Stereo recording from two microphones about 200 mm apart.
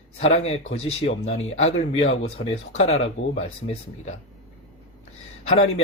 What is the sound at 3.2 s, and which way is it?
Speech, 70° left (ahead or behind).